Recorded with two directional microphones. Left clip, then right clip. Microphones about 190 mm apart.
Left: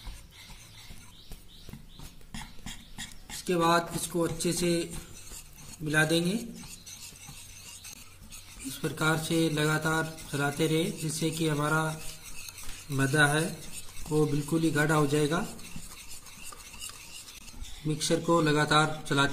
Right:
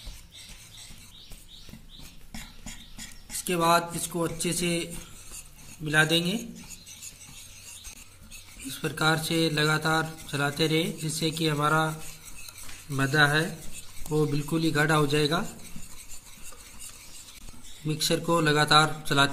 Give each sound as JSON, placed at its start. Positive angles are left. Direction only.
{"t": 3.4, "sound": "speech", "side_deg": -5}
{"t": 5.9, "sound": "speech", "side_deg": 0}
{"t": 8.6, "sound": "speech", "side_deg": 0}
{"t": 12.9, "sound": "speech", "side_deg": 0}
{"t": 17.8, "sound": "speech", "side_deg": 0}